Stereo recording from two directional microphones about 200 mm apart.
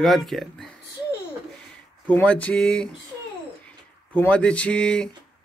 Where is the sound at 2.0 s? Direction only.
10° left (ahead or behind).